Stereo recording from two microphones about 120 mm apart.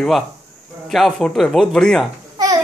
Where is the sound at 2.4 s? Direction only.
30° right (ahead or behind).